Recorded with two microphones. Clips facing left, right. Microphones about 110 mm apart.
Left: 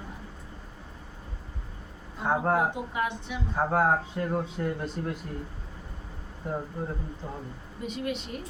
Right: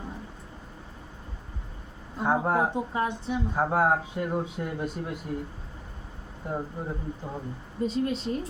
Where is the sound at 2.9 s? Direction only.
35° right (ahead or behind).